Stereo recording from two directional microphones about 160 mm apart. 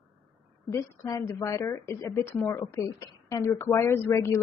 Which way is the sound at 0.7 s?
20° left (ahead or behind).